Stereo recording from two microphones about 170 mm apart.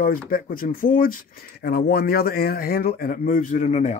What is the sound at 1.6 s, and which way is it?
Speech, 65° left (ahead or behind).